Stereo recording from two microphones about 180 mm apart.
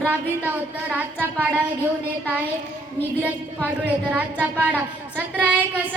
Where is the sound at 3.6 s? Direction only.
10° right (ahead or behind).